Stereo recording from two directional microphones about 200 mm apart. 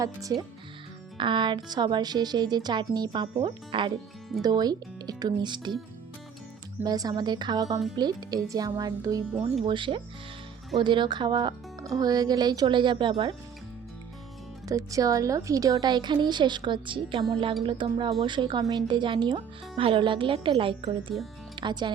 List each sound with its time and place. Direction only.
0.0 s a woman's voice: 15° right (ahead or behind)
6.8 s a woman's voice: 20° right (ahead or behind)
14.7 s a woman's voice: 15° right (ahead or behind)
21.1 s speech: centre (ahead or behind)
21.5 s speech: 20° right (ahead or behind)